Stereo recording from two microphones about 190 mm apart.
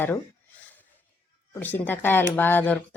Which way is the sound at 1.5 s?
10° left (ahead or behind).